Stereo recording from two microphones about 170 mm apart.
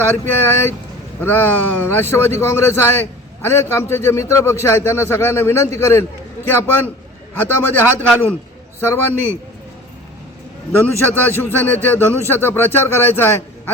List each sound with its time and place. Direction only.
0.1 s a man's voice: 10° left (ahead or behind)
10.7 s a man's voice: 10° left (ahead or behind)